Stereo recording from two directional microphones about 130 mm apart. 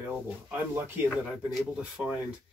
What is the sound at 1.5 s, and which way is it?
Speech, 5° right (ahead or behind).